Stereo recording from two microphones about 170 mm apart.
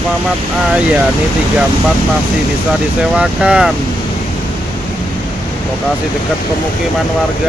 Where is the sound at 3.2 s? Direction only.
5° right (ahead or behind).